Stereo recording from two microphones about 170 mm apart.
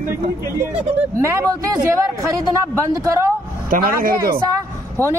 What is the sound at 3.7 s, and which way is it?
Speech, 60° right (ahead or behind).